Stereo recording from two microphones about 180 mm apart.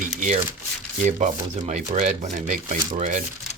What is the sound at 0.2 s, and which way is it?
Speech, 40° right (ahead or behind).